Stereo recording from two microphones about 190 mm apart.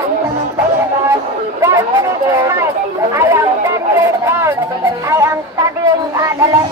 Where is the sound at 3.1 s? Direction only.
15° right (ahead or behind).